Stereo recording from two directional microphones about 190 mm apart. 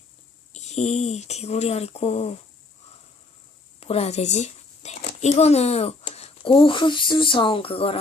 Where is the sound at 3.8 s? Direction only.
30° left (ahead or behind).